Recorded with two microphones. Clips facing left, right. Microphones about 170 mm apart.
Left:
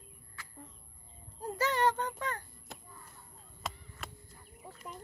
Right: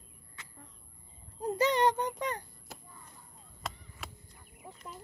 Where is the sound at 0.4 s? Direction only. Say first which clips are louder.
Left 3 dB; 20° right (ahead or behind).